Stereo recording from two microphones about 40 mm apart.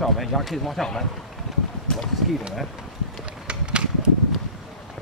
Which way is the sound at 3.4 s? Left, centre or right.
Right.